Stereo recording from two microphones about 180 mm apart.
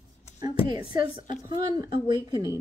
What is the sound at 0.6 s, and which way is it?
Speech, 30° left (ahead or behind).